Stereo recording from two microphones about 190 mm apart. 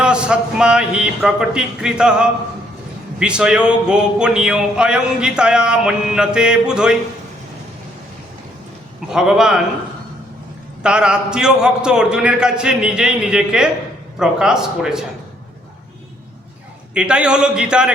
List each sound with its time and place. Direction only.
0.0 s speech: 5° right (ahead or behind)
9.0 s speech: 5° right (ahead or behind)
10.8 s speech: 5° right (ahead or behind)
16.9 s speech: 5° right (ahead or behind)